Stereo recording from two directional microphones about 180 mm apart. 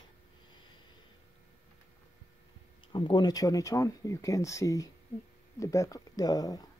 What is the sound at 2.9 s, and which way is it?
Speech, 25° left (ahead or behind).